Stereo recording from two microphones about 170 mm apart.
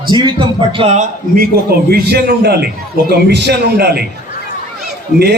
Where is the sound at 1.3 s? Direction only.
60° right (ahead or behind).